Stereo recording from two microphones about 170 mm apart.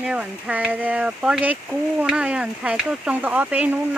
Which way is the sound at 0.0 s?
5° right (ahead or behind).